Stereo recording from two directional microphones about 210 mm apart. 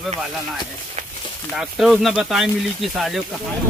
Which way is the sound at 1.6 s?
Centre (ahead or behind).